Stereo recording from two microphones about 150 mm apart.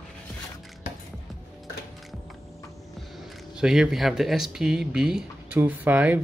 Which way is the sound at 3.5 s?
5° right (ahead or behind).